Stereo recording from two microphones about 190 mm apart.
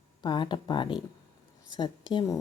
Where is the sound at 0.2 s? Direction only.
25° left (ahead or behind).